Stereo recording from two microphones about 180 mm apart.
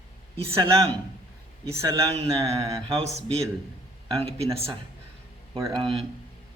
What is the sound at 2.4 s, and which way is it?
Mantra, 15° right (ahead or behind).